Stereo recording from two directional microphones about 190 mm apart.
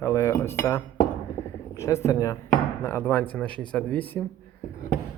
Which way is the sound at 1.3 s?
15° left (ahead or behind).